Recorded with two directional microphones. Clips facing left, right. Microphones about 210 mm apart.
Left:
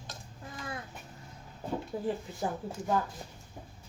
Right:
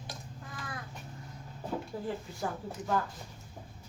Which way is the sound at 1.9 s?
15° left (ahead or behind).